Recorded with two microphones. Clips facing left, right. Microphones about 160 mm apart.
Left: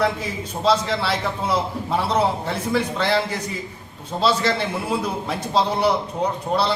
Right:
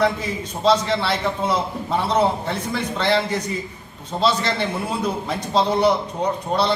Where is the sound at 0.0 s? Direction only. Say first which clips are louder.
Right 2 dB; 5° left (ahead or behind).